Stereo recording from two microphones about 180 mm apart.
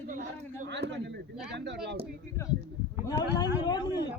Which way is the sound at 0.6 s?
75° right (ahead or behind).